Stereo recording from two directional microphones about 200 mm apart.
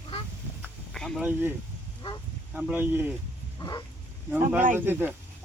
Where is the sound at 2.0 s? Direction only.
25° left (ahead or behind).